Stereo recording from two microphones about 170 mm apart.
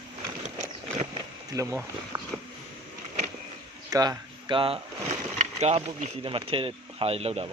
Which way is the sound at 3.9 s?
25° right (ahead or behind).